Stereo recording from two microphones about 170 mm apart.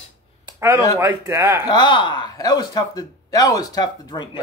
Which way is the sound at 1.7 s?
25° left (ahead or behind).